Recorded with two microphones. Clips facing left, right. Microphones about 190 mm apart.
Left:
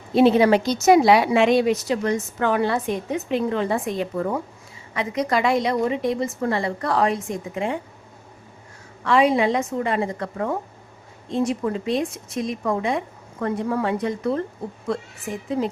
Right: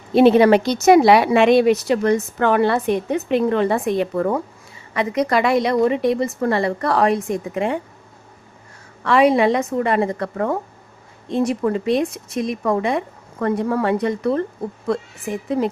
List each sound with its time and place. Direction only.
0.1 s speech: 65° right (ahead or behind)
9.0 s speech: 65° right (ahead or behind)